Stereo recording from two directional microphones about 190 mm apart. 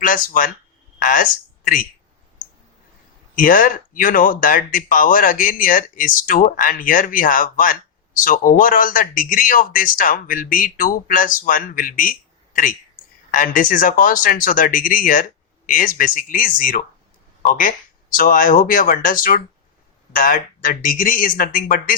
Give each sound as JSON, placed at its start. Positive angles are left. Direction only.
{"t": 0.0, "sound": "speech", "side_deg": 45}
{"t": 3.3, "sound": "speech", "side_deg": 45}
{"t": 13.3, "sound": "speech", "side_deg": 45}